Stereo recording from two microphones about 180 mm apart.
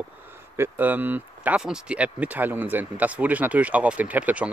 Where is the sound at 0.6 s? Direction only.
10° right (ahead or behind).